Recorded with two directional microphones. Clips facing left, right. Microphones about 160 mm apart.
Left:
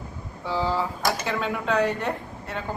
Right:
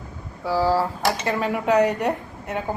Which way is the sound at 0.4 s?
10° right (ahead or behind).